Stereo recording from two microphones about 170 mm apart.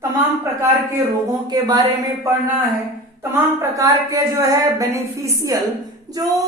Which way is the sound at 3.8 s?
20° right (ahead or behind).